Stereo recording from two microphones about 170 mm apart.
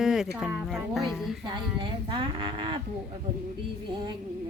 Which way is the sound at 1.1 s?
Centre (ahead or behind).